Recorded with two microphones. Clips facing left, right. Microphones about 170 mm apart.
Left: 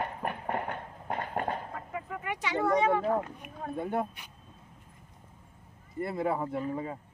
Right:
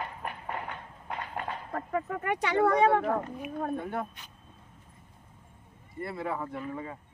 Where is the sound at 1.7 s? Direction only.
60° right (ahead or behind).